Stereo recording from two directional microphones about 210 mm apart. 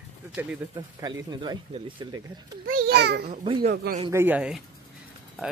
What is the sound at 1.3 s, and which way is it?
Speech, 20° right (ahead or behind).